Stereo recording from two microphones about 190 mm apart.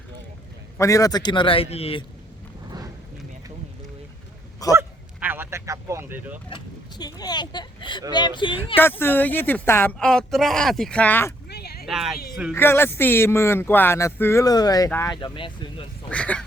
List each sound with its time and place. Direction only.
0.8 s speech: 15° left (ahead or behind)
4.8 s honk: 10° right (ahead or behind)
6.5 s speech: 20° left (ahead or behind)
8.8 s speech: 10° left (ahead or behind)
11.4 s a sound: 60° left (ahead or behind)
11.9 s speech: centre (ahead or behind)
12.5 s speech: 10° left (ahead or behind)
15.1 s speech: 25° left (ahead or behind)
16.0 s speech: 5° left (ahead or behind)